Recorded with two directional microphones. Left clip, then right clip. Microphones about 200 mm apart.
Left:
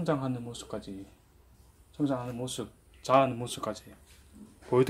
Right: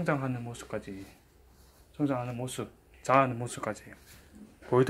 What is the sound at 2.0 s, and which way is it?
Speech, 20° right (ahead or behind).